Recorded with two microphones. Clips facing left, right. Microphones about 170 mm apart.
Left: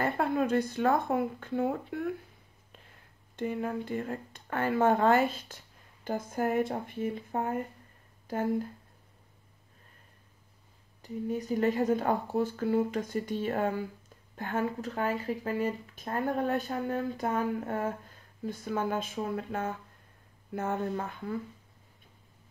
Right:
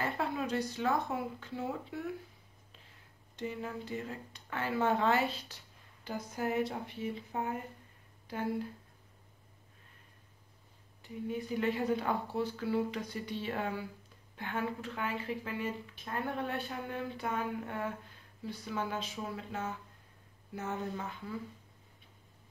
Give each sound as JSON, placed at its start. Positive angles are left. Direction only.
{"t": 0.0, "sound": "speech", "side_deg": 50}
{"t": 3.3, "sound": "speech", "side_deg": 55}
{"t": 11.0, "sound": "speech", "side_deg": 40}